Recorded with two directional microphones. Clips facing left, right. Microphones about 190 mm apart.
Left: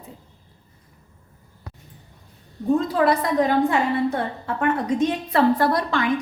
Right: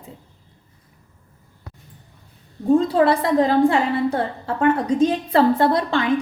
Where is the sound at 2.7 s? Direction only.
30° right (ahead or behind).